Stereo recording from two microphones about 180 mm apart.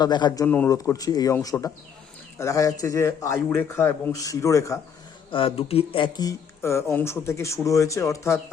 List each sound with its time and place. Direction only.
0.0 s speech: 25° left (ahead or behind)
0.4 s speech: 10° left (ahead or behind)
5.3 s speech: 30° left (ahead or behind)